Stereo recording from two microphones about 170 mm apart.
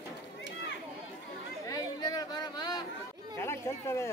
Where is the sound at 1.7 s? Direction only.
20° left (ahead or behind).